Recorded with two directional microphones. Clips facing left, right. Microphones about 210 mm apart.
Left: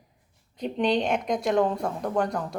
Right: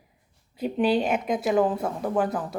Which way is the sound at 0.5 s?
5° right (ahead or behind).